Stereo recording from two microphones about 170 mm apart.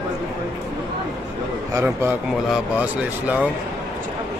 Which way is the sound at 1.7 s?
15° right (ahead or behind).